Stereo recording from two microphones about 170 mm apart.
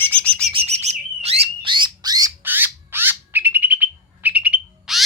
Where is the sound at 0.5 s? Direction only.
40° right (ahead or behind); by 5.0 s 5° right (ahead or behind).